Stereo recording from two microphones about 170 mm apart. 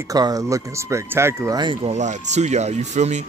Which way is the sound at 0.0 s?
20° right (ahead or behind).